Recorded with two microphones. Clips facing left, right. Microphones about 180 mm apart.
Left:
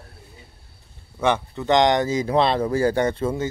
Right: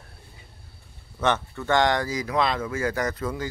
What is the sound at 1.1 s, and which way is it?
Speech, 10° left (ahead or behind).